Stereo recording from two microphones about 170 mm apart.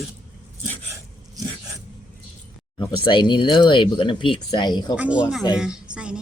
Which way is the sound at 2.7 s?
25° left (ahead or behind).